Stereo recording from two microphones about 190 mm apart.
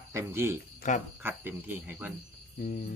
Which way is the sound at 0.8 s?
40° left (ahead or behind).